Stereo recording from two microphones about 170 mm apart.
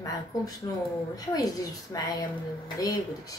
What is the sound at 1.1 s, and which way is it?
Speech, 20° left (ahead or behind).